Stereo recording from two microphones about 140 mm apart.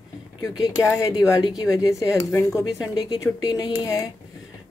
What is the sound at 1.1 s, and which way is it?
Speech, 25° left (ahead or behind).